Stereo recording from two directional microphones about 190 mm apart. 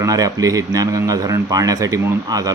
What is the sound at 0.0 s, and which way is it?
A man's voice, 20° right (ahead or behind).